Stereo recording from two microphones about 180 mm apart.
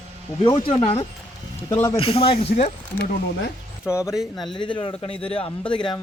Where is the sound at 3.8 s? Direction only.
15° left (ahead or behind).